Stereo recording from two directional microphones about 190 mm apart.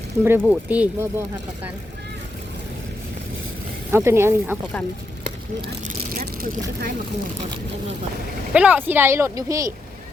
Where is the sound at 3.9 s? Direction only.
15° right (ahead or behind).